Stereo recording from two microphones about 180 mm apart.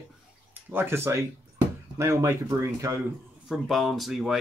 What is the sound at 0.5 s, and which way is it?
Speech, 10° right (ahead or behind).